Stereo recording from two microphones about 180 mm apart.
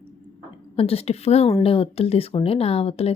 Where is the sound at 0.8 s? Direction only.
35° left (ahead or behind).